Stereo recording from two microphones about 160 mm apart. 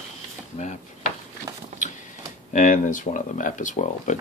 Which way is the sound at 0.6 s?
50° left (ahead or behind).